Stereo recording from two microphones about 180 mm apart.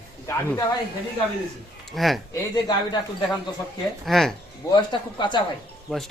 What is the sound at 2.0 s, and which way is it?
Speech, centre (ahead or behind).